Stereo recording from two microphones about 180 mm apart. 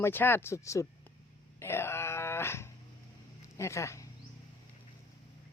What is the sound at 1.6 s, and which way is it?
Dog, 15° left (ahead or behind).